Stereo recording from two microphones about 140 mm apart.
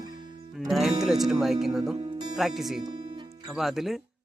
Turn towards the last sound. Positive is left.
turn(degrees=0)  # may be behind; listen again after turning